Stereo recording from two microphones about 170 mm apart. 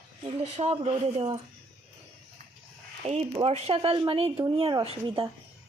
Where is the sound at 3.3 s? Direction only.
30° right (ahead or behind).